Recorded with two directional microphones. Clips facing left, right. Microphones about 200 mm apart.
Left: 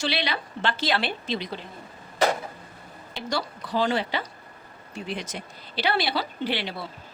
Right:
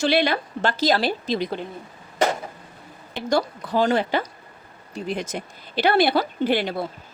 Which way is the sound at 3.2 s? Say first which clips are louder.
Right 8 dB; 50° right (ahead or behind).